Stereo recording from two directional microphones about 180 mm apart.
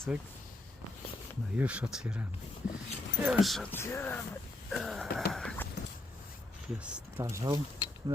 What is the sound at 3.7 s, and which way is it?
Speech, 15° left (ahead or behind).